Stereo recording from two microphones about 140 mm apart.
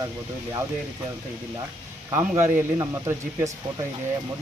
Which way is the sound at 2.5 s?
20° right (ahead or behind).